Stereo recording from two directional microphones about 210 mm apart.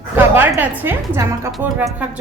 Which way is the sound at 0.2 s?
10° right (ahead or behind).